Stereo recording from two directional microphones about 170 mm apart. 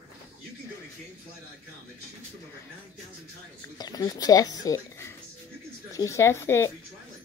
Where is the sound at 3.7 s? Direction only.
25° left (ahead or behind).